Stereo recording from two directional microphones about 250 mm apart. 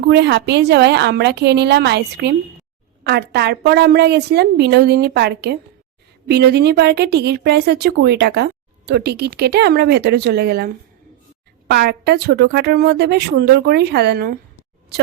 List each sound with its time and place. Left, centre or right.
0.1 s a woman's voice: right
11.7 s a woman's voice: right